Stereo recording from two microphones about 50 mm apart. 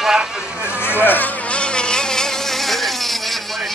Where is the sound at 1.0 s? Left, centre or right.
Left.